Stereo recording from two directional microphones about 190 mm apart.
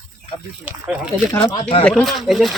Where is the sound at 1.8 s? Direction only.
Centre (ahead or behind).